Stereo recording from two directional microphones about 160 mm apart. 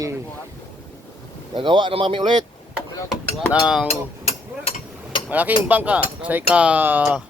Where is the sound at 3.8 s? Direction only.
40° left (ahead or behind).